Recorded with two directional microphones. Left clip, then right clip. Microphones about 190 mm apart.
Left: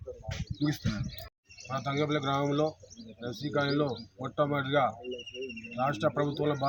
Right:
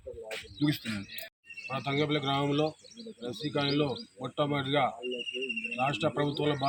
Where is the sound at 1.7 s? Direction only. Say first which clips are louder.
Even; 10° left (ahead or behind).